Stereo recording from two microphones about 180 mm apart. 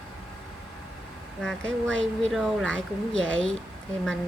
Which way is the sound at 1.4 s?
5° left (ahead or behind).